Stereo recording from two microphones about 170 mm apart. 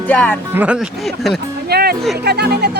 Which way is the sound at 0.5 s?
10° right (ahead or behind).